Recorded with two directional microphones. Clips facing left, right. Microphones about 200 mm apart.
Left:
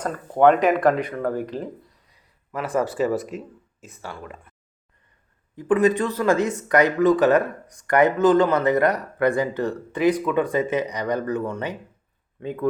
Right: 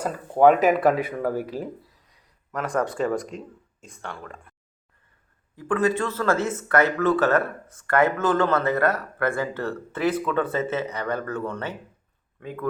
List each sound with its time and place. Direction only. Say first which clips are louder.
0.0 s speech: even; 5° right (ahead or behind)
5.5 s speech: left 4 dB; 20° left (ahead or behind)